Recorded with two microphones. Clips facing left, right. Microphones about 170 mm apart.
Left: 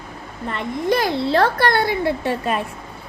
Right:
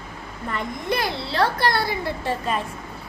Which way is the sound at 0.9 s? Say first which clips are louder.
Left 8 dB; 45° left (ahead or behind).